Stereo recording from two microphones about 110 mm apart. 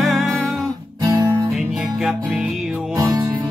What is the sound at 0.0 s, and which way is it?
Music, centre (ahead or behind).